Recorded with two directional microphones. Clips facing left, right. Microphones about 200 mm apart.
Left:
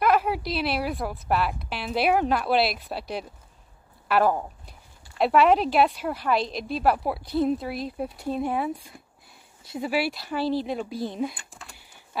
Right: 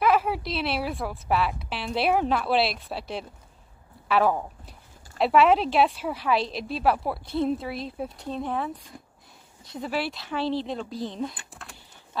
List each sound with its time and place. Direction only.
0.0 s a woman's voice: centre (ahead or behind)
11.3 s speech: centre (ahead or behind)